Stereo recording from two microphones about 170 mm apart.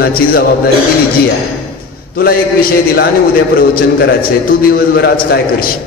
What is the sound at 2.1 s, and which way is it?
A man's voice, 60° left (ahead or behind).